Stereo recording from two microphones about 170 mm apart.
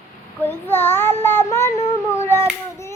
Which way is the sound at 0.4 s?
10° left (ahead or behind).